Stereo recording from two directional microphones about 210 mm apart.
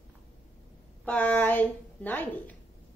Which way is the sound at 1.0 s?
10° left (ahead or behind).